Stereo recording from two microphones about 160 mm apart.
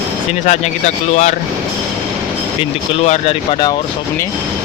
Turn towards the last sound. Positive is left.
turn(degrees=45)  # may be behind; listen again after turning